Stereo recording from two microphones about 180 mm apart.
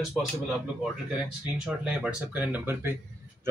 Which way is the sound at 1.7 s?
5° right (ahead or behind).